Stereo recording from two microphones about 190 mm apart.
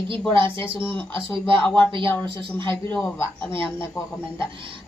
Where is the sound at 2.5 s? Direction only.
10° left (ahead or behind).